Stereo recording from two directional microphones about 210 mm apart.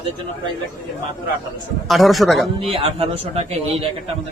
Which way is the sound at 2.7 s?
30° right (ahead or behind).